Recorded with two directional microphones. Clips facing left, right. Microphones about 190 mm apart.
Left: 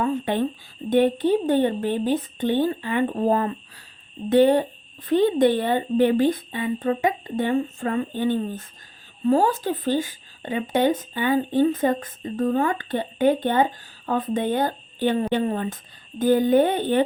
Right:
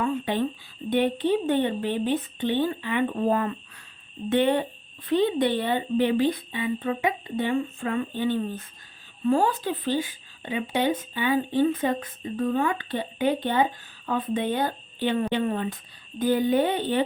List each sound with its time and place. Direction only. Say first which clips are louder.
0.0 s speech: left 3 dB; 45° left (ahead or behind)